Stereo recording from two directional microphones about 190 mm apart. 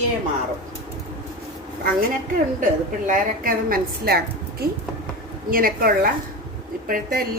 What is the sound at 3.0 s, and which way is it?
Speech, 45° right (ahead or behind).